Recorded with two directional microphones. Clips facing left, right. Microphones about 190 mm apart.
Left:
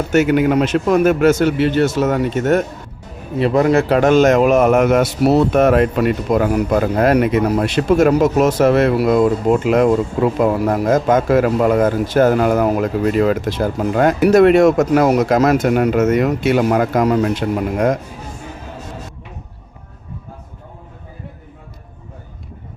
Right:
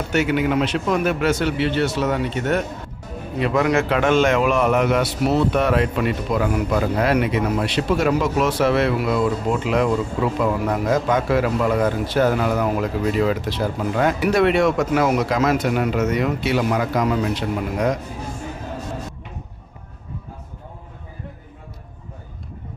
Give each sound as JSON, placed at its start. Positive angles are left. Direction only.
{"t": 0.1, "sound": "a man's voice", "side_deg": 45}
{"t": 3.3, "sound": "a man's voice", "side_deg": 35}